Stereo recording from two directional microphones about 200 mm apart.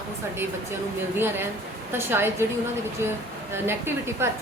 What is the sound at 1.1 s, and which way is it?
A woman's voice, 10° right (ahead or behind).